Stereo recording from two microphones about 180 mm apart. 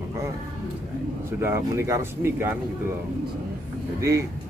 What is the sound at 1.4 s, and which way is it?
A man's voice, 15° right (ahead or behind).